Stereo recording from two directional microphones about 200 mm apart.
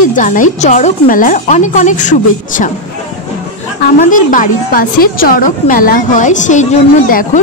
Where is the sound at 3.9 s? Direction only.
40° left (ahead or behind).